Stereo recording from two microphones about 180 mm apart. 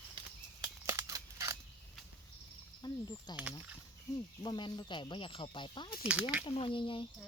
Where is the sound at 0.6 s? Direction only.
15° right (ahead or behind).